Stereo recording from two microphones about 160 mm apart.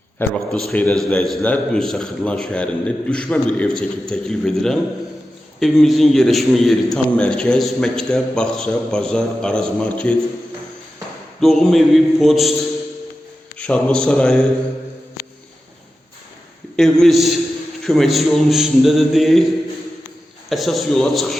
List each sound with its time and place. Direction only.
0.2 s a man's voice: 5° left (ahead or behind)
11.3 s a man's voice: centre (ahead or behind)
13.6 s a man's voice: 5° left (ahead or behind)
16.7 s a man's voice: 5° left (ahead or behind)
20.5 s a man's voice: centre (ahead or behind)